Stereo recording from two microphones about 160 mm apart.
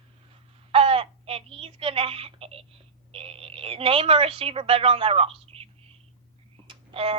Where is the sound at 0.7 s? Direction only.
35° right (ahead or behind).